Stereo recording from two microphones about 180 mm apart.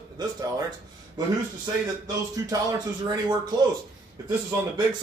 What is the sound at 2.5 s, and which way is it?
Speech, 20° right (ahead or behind).